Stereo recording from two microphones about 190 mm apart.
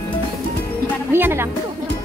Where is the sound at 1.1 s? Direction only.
10° right (ahead or behind).